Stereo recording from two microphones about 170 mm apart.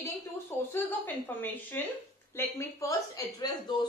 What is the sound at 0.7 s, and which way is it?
A woman's voice, 10° left (ahead or behind).